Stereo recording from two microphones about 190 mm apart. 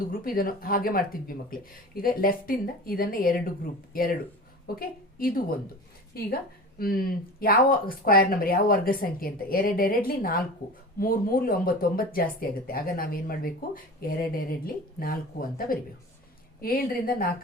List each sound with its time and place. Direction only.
0.1 s a woman's voice: 50° left (ahead or behind)